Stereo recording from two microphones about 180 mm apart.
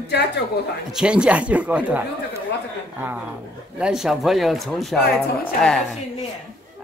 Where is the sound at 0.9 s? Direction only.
5° right (ahead or behind).